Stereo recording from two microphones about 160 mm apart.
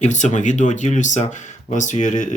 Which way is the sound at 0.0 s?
50° left (ahead or behind).